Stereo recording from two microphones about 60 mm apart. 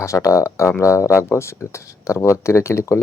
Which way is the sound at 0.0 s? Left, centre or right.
Left.